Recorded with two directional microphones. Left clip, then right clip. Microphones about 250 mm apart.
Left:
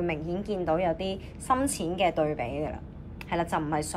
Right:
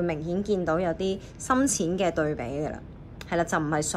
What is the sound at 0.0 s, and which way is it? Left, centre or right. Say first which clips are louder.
A woman's voice: right 2 dB; centre.